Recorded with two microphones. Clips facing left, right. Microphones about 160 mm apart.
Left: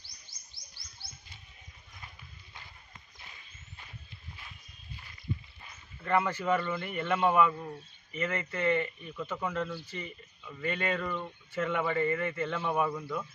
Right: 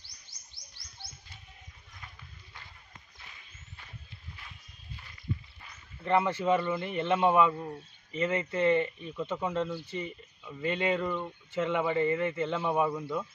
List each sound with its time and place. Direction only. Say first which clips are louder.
6.0 s speech: right 2 dB; 20° right (ahead or behind)